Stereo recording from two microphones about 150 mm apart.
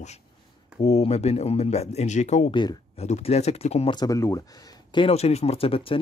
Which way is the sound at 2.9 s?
45° left (ahead or behind).